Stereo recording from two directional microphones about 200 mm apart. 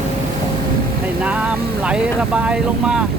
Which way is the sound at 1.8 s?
5° right (ahead or behind).